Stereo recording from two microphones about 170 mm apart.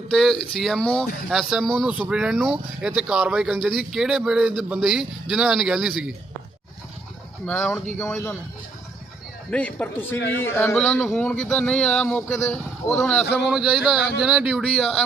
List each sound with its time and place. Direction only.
0.1 s speech: centre (ahead or behind)
7.4 s speech: 10° left (ahead or behind)
9.5 s speech: 5° left (ahead or behind)